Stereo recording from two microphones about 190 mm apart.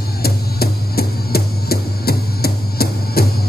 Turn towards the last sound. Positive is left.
turn(degrees=55)  # may be behind; listen again after turning